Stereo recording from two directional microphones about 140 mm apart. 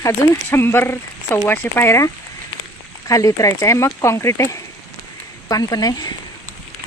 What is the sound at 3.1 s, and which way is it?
Speech, 25° left (ahead or behind).